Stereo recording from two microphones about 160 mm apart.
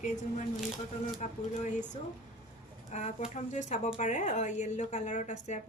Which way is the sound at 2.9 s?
45° left (ahead or behind).